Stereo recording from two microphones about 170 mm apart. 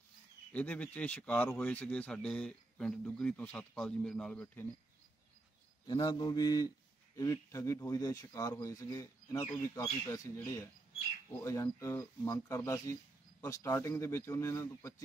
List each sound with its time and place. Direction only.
0.5 s speech: 10° left (ahead or behind)
5.9 s speech: 30° left (ahead or behind)